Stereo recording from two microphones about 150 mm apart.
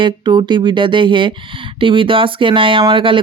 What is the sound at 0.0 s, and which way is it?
Speech, 30° right (ahead or behind).